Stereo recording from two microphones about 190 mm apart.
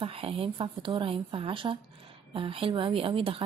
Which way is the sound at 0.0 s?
30° right (ahead or behind).